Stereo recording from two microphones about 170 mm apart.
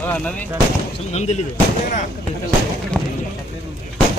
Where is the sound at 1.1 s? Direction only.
40° left (ahead or behind).